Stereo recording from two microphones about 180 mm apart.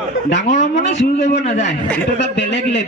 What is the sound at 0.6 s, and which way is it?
Speech, 40° left (ahead or behind).